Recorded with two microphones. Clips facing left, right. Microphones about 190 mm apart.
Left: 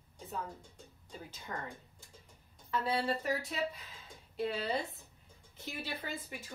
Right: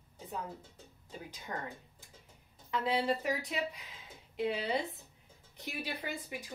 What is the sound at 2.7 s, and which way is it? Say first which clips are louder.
Speech: right 2 dB; 15° right (ahead or behind).